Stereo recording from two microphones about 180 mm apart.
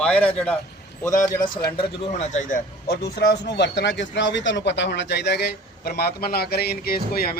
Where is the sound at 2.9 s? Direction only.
65° left (ahead or behind).